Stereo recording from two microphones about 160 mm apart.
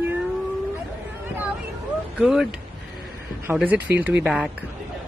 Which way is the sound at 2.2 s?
5° right (ahead or behind).